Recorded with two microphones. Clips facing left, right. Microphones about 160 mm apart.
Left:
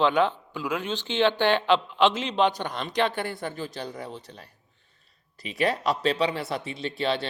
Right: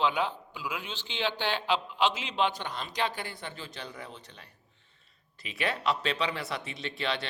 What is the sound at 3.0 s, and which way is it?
Speech, 50° left (ahead or behind).